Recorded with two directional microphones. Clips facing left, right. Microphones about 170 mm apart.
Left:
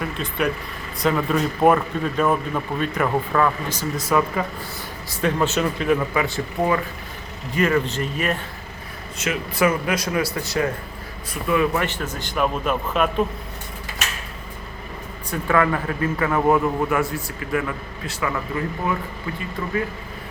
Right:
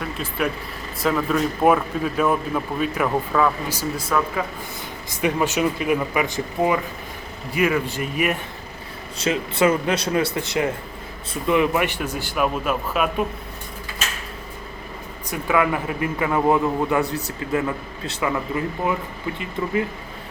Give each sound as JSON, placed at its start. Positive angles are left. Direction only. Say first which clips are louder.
{"t": 0.0, "sound": "a man's voice", "louder": "left 1 dB", "side_deg": 0}
{"t": 4.1, "sound": "speech", "louder": "left 3 dB", "side_deg": 5}
{"t": 5.2, "sound": "a man's voice", "louder": "even", "side_deg": -10}
{"t": 9.1, "sound": "a man's voice", "louder": "right 2 dB", "side_deg": -30}
{"t": 15.3, "sound": "a man's voice", "louder": "left 1 dB", "side_deg": -10}